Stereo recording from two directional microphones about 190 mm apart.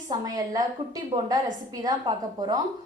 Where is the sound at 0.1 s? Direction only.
20° right (ahead or behind).